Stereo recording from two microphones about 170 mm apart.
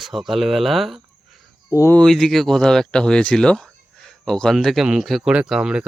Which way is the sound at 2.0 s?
Centre (ahead or behind).